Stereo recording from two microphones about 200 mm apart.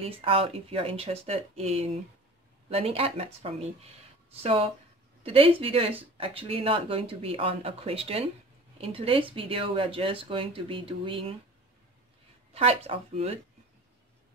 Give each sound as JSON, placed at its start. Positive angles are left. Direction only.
{"t": 0.0, "sound": "speech", "side_deg": -30}
{"t": 12.5, "sound": "speech", "side_deg": -30}